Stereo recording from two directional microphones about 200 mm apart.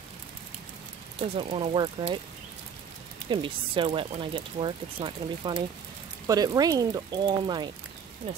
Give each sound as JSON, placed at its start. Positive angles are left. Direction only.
{"t": 1.2, "sound": "speech", "side_deg": -25}
{"t": 3.3, "sound": "speech", "side_deg": -25}